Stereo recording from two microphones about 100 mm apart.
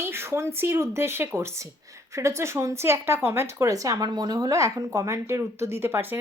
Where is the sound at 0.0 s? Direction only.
25° right (ahead or behind).